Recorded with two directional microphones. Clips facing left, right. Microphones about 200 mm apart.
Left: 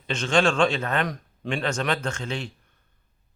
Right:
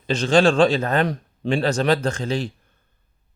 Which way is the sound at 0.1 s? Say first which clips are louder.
Right 5 dB; 35° right (ahead or behind).